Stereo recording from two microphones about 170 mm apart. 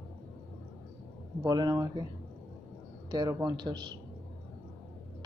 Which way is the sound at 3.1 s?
25° right (ahead or behind).